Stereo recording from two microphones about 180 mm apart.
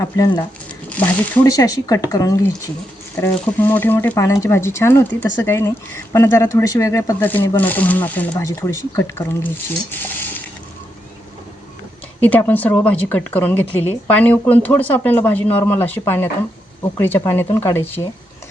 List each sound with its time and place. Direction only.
0.0 s a woman's voice: 20° left (ahead or behind)
10.0 s a sound: 10° left (ahead or behind)
12.2 s a woman's voice: 10° left (ahead or behind)